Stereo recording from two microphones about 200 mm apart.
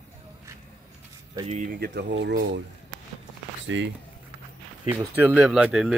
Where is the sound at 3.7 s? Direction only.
75° right (ahead or behind).